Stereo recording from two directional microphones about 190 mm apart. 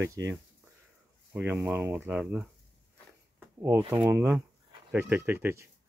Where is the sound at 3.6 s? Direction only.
15° right (ahead or behind).